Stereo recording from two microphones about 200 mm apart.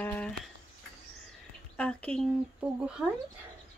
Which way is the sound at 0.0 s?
5° left (ahead or behind).